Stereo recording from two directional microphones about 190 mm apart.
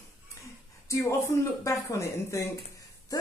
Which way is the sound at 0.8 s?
15° left (ahead or behind).